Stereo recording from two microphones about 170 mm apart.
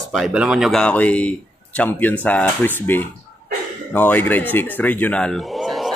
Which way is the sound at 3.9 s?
10° left (ahead or behind).